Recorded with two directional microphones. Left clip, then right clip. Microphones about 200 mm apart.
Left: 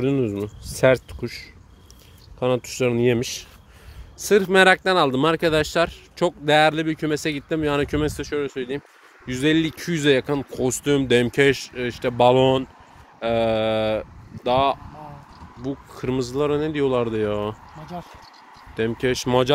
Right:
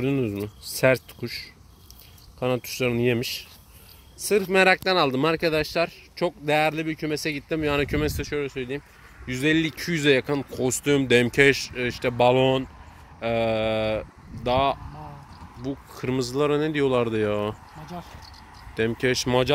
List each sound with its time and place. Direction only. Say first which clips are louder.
0.0 s speech: left 3 dB; 5° left (ahead or behind)
15.9 s speech: left 2 dB; 15° left (ahead or behind)
16.2 s speech: left 1 dB; centre (ahead or behind)
18.8 s speech: left 1 dB; centre (ahead or behind)